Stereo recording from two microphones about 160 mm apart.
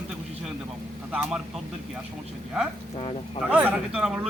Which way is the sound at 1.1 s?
10° right (ahead or behind).